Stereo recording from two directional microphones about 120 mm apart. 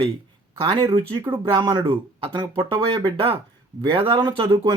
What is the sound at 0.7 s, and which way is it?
Speech, 45° right (ahead or behind).